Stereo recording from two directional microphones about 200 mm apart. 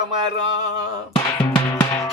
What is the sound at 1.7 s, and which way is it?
Music, 15° left (ahead or behind).